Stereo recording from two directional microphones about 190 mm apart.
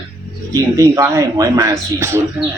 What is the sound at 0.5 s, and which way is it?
Speech, 15° right (ahead or behind).